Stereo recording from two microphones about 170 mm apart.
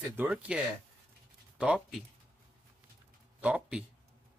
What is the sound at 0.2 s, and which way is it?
Speech, 5° right (ahead or behind).